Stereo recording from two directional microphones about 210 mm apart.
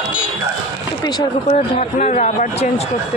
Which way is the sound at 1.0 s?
20° left (ahead or behind).